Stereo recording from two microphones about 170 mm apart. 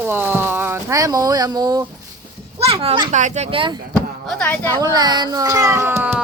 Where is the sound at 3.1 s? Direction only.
45° right (ahead or behind).